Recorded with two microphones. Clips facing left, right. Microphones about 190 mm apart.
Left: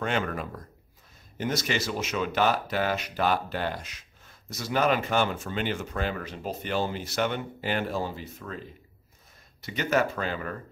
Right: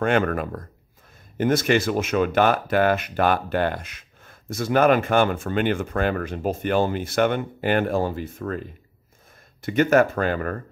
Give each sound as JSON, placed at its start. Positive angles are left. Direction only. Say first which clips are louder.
{"t": 0.0, "sound": "speech", "louder": "right 8 dB", "side_deg": -55}
{"t": 9.6, "sound": "speech", "louder": "right 8 dB", "side_deg": -50}